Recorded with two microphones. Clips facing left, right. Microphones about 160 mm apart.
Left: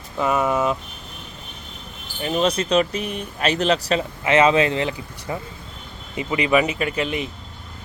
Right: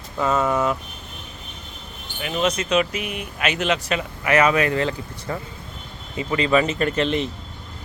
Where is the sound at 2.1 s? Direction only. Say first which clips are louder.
Left 2 dB; 35° left (ahead or behind); by 7.3 s 5° left (ahead or behind).